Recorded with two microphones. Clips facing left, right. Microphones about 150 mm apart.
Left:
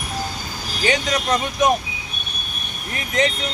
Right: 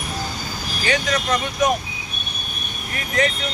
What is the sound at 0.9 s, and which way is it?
Speech, 20° left (ahead or behind).